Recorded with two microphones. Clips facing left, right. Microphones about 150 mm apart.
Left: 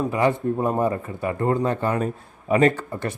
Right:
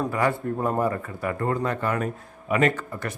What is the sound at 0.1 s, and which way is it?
Speech, 20° left (ahead or behind).